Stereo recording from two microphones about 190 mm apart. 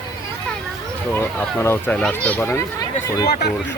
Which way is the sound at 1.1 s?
10° left (ahead or behind).